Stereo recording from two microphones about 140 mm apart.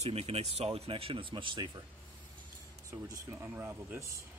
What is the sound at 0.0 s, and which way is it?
Speech, 45° right (ahead or behind).